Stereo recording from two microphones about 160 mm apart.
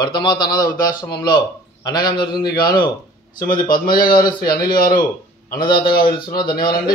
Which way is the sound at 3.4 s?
60° left (ahead or behind).